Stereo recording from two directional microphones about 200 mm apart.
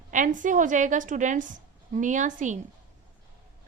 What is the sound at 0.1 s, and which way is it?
A woman's voice, 40° right (ahead or behind).